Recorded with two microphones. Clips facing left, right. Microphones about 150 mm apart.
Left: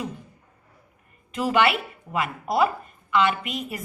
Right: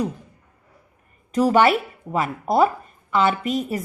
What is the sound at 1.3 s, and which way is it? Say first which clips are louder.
A woman's voice: right 5 dB; 40° right (ahead or behind).